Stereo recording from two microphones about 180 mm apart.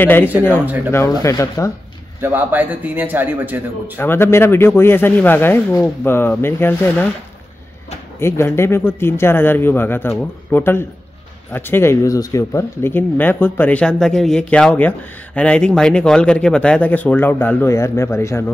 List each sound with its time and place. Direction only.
0.0 s speech: 10° left (ahead or behind)
2.2 s a man's voice: 10° right (ahead or behind)
4.0 s speech: 10° left (ahead or behind)
8.2 s speech: 15° left (ahead or behind)